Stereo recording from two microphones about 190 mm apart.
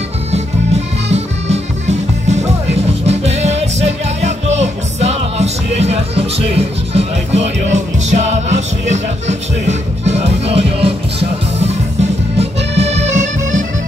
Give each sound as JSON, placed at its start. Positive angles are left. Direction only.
{"t": 1.1, "sound": "music", "side_deg": -35}